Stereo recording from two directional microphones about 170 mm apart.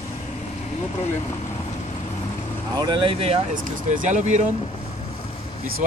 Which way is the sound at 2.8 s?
30° right (ahead or behind).